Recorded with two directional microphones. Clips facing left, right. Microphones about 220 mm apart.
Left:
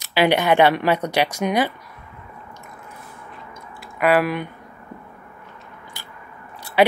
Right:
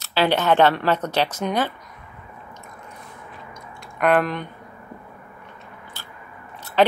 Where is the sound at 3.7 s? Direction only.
5° left (ahead or behind).